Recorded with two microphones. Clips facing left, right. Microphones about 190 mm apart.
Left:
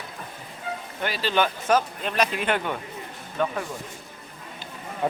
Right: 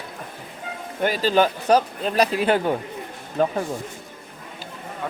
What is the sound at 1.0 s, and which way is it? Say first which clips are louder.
Speech: right 6 dB; 45° right (ahead or behind).